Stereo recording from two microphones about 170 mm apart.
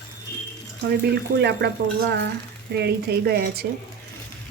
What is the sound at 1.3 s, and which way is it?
Speech, 80° right.